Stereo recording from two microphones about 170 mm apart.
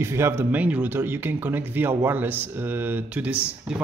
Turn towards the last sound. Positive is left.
turn(degrees=-10)  # may be behind; listen again after turning